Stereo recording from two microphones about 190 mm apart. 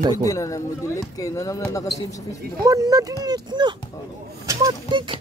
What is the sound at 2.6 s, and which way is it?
Speech, 20° right (ahead or behind).